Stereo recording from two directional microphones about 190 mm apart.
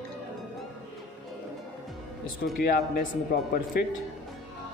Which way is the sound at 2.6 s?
55° left (ahead or behind).